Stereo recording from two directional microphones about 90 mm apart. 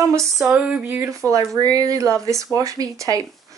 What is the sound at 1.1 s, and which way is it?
Speech, 35° right (ahead or behind).